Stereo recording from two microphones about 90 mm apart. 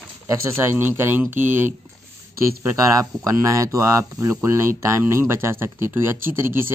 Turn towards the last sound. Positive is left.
turn(degrees=-25)  # may be behind; listen again after turning